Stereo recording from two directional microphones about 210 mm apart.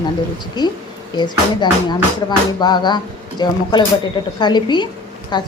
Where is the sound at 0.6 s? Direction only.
20° left (ahead or behind).